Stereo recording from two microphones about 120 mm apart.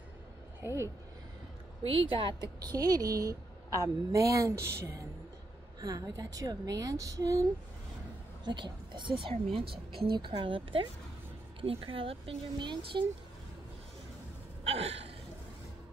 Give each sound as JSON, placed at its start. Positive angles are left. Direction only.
{"t": 0.6, "sound": "speech", "side_deg": -20}
{"t": 1.9, "sound": "a woman's voice", "side_deg": -50}
{"t": 8.5, "sound": "speech", "side_deg": -40}
{"t": 14.6, "sound": "gasp", "side_deg": -60}